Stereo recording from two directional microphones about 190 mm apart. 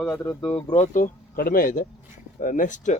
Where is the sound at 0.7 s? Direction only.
40° left (ahead or behind).